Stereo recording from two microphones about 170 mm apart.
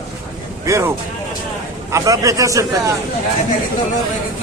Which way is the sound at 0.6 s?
15° right (ahead or behind).